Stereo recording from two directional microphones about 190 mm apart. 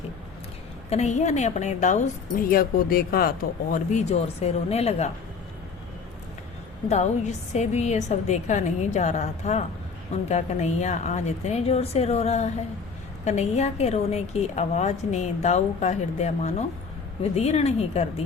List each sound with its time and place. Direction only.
0.9 s speech: 35° left (ahead or behind)
6.8 s speech: 35° left (ahead or behind)